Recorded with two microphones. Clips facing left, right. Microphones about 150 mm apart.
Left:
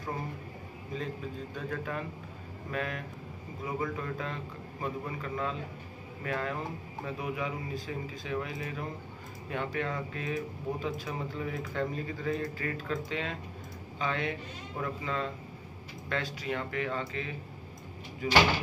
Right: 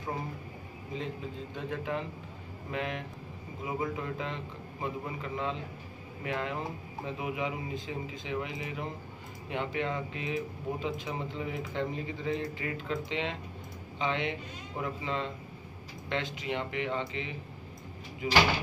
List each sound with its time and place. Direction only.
0.9 s speech: 20° right (ahead or behind)